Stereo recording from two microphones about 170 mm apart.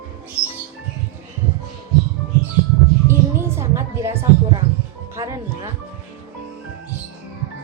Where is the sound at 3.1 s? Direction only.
15° right (ahead or behind).